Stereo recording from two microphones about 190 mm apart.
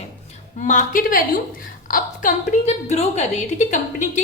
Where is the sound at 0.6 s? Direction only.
40° left (ahead or behind).